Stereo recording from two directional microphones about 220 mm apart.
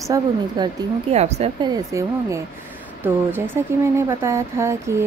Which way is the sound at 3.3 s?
10° right (ahead or behind).